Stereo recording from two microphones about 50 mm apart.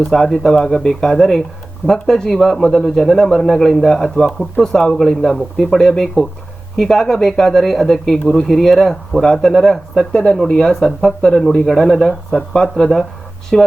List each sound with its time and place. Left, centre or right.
0.0 s speech: centre
4.3 s speech: centre